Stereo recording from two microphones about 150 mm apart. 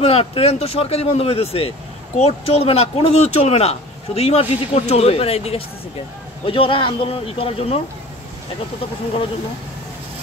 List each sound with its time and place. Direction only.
0.0 s speech: 40° left (ahead or behind)